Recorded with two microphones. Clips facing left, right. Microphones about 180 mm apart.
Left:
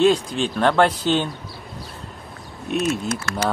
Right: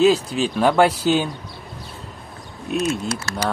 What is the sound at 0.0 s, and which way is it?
Speech, 5° right (ahead or behind).